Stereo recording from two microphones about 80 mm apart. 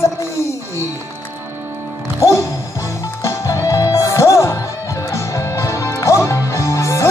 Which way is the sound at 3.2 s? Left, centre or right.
Left.